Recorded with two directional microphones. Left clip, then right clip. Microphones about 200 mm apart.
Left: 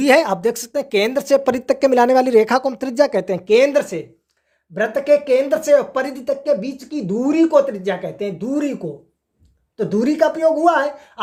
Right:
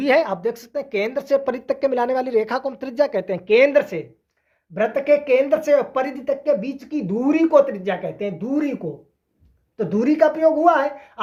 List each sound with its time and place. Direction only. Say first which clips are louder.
0.0 s speech: left 4 dB; 45° left (ahead or behind); by 11.2 s 25° left (ahead or behind)